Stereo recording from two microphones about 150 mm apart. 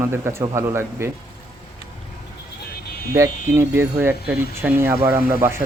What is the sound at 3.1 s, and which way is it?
Speech, 20° right (ahead or behind).